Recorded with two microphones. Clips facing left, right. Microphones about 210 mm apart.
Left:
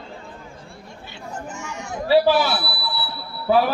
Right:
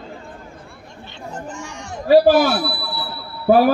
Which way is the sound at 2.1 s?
45° right (ahead or behind).